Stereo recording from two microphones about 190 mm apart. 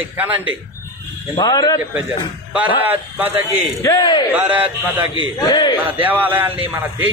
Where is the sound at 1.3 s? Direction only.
20° left (ahead or behind).